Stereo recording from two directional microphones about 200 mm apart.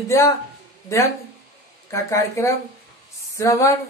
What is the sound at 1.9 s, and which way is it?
Speech, 15° left (ahead or behind).